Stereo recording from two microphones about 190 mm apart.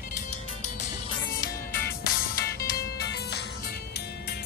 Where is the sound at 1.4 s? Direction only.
50° left (ahead or behind).